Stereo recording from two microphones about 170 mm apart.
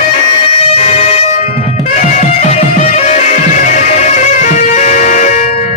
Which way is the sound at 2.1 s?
45° left (ahead or behind).